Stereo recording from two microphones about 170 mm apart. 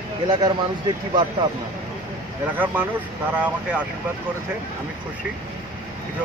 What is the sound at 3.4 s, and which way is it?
Speech, 5° right (ahead or behind).